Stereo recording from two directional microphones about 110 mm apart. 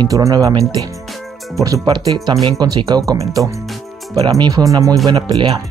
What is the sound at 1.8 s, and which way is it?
Speech, 40° right (ahead or behind).